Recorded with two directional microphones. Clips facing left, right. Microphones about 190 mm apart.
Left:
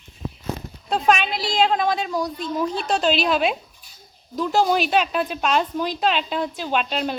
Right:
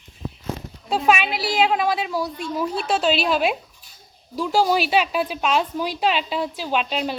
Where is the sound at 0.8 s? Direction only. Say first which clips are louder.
Even; 5° right (ahead or behind).